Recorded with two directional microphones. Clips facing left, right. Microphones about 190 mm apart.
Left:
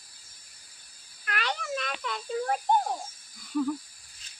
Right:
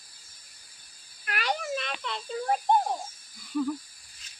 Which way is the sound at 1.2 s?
15° right (ahead or behind).